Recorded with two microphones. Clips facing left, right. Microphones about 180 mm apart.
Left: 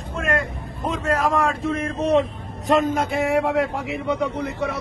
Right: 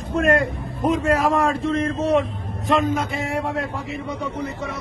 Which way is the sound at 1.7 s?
15° left (ahead or behind).